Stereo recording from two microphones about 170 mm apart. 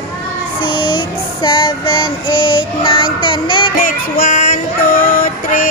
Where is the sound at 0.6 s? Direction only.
30° left (ahead or behind).